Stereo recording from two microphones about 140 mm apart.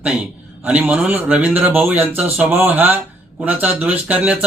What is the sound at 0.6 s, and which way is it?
Speech, 10° right (ahead or behind).